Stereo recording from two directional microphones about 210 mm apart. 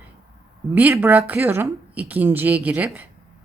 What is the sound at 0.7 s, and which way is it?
A woman's voice, 10° right (ahead or behind).